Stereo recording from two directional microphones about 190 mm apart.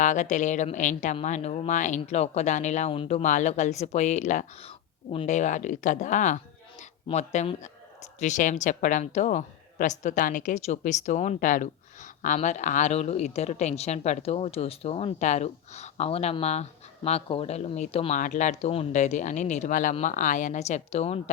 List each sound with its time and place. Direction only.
0.0 s a woman's voice: 40° left (ahead or behind)